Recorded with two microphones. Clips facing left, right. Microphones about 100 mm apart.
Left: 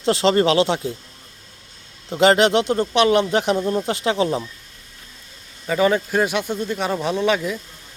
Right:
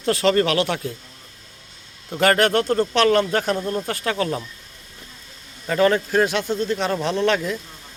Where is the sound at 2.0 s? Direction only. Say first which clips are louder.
Left 3 dB; 20° left (ahead or behind).